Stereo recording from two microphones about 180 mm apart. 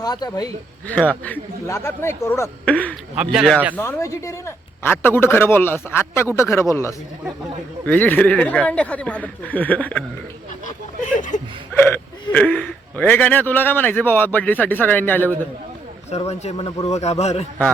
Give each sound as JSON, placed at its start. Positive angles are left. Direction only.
{"t": 0.0, "sound": "speech", "side_deg": 20}
{"t": 0.9, "sound": "speech", "side_deg": 10}
{"t": 3.8, "sound": "speech", "side_deg": 15}
{"t": 11.3, "sound": "chuckle", "side_deg": 45}
{"t": 11.7, "sound": "speech", "side_deg": 10}
{"t": 16.0, "sound": "speech", "side_deg": 35}